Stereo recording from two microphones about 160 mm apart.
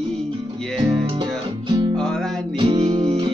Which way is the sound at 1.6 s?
30° right (ahead or behind).